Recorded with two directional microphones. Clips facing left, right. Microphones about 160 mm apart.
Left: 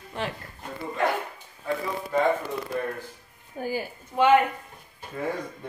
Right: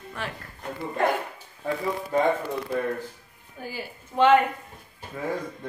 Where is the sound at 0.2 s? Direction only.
30° left (ahead or behind).